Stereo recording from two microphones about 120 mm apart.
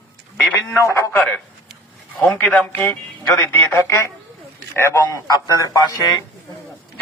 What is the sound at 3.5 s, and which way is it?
A man's voice, 20° left (ahead or behind).